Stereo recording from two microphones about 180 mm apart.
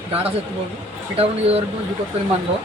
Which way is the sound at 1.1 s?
35° right (ahead or behind).